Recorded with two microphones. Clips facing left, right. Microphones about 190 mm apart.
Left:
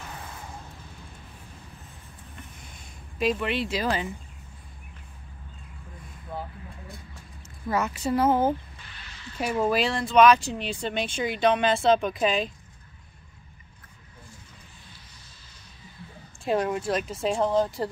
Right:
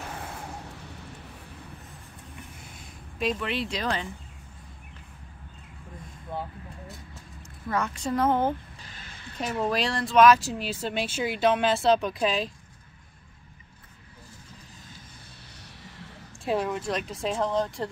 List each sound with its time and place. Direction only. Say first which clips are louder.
3.2 s speech: left 3 dB; centre (ahead or behind)
7.7 s speech: left 2 dB; 5° left (ahead or behind)
8.8 s a sound: even; 45° right (ahead or behind)
9.4 s speech: left 3 dB; 5° left (ahead or behind)
16.4 s speech: left 2 dB; centre (ahead or behind)